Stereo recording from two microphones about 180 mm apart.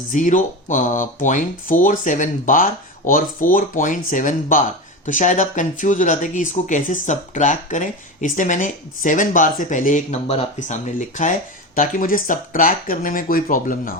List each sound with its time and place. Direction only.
0.1 s speech: 45° left (ahead or behind)